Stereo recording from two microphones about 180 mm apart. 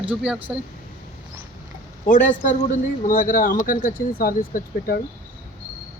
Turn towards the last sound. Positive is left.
turn(degrees=50)  # may be behind; listen again after turning